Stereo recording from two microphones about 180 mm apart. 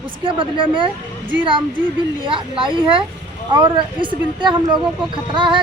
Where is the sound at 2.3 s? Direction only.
30° right (ahead or behind).